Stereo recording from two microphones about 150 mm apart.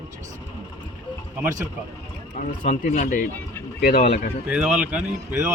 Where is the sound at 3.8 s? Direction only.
90° left.